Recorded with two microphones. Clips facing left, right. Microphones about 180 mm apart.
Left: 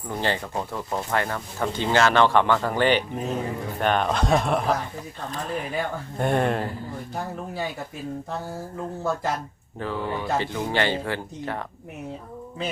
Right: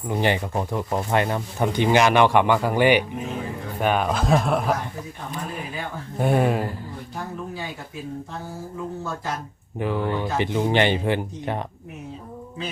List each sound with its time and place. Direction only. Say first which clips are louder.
0.1 s speech: right 4 dB; 15° right (ahead or behind)
6.1 s speech: right 2 dB; 5° right (ahead or behind)
9.7 s speech: right 4 dB; 15° right (ahead or behind)